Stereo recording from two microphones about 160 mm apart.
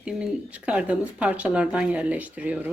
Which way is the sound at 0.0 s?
5° right (ahead or behind).